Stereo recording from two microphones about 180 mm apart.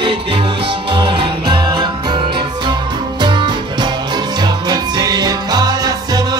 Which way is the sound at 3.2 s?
25° right (ahead or behind).